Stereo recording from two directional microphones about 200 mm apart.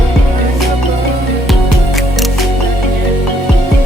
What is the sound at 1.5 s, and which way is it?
Music, centre (ahead or behind).